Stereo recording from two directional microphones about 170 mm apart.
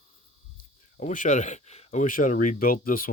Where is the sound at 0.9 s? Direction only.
50° left (ahead or behind).